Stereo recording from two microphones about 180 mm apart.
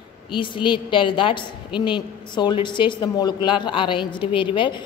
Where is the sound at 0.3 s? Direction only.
25° left (ahead or behind).